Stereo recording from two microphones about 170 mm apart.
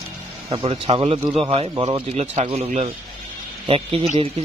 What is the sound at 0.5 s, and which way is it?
A man's voice, 30° right (ahead or behind).